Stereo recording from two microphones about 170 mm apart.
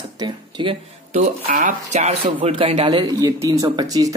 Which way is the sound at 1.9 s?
40° right (ahead or behind).